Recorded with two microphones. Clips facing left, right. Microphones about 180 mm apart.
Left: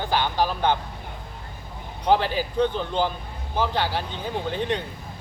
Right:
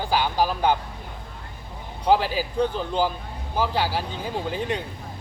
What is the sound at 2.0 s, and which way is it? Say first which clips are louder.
A man's voice: even; 5° right (ahead or behind).